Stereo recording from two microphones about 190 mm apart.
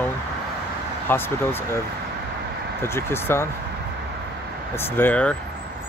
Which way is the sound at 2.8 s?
15° left (ahead or behind).